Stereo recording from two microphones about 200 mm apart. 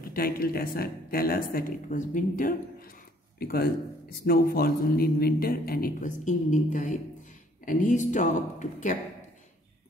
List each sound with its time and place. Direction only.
0.1 s speech: 50° left (ahead or behind)